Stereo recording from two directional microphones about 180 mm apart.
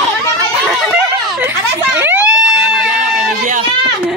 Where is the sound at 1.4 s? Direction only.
10° right (ahead or behind).